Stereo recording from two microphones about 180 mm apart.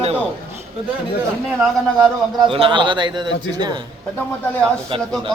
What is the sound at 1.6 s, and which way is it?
Speech, centre (ahead or behind).